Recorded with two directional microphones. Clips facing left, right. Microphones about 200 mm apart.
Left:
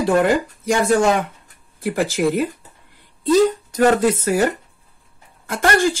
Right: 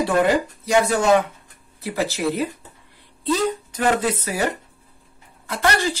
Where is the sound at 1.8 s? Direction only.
50° left (ahead or behind).